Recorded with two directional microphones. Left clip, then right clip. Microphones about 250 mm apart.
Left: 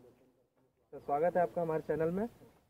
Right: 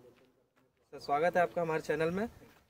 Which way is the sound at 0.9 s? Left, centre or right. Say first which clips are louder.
Right 2 dB; right.